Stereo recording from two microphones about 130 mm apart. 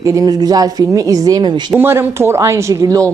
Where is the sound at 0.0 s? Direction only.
25° right (ahead or behind).